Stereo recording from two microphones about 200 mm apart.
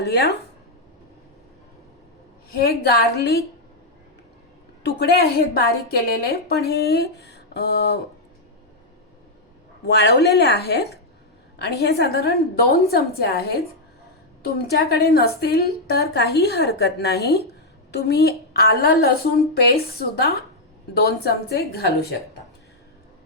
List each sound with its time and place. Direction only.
0.0 s a woman's voice: 55° left (ahead or behind)
2.5 s a woman's voice: 50° left (ahead or behind)
4.8 s a woman's voice: 50° left (ahead or behind)
9.8 s a woman's voice: 55° left (ahead or behind)